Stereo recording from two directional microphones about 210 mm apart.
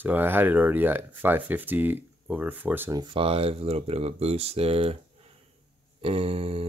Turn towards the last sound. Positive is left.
turn(degrees=-25)  # may be behind; listen again after turning